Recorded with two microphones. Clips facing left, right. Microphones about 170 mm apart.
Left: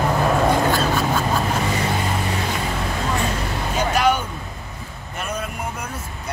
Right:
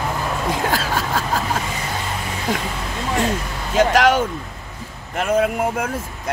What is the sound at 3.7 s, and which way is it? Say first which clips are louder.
Speech: right 5 dB; 90° right.